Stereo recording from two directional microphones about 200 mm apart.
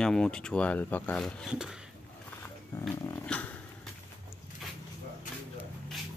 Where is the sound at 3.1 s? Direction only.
5° left (ahead or behind).